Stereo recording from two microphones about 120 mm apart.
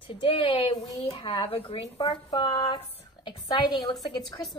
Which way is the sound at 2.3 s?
40° left (ahead or behind).